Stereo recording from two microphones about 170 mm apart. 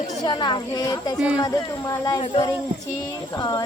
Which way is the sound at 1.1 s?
5° right (ahead or behind).